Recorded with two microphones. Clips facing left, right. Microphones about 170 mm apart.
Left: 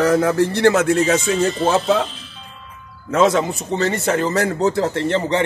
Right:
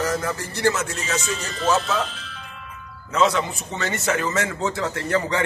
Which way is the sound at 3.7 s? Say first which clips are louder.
Left 6 dB; 30° left (ahead or behind).